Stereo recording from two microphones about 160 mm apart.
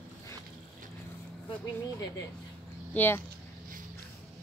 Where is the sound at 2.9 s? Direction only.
10° left (ahead or behind).